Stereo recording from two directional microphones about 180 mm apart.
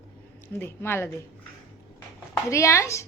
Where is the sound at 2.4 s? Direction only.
15° left (ahead or behind).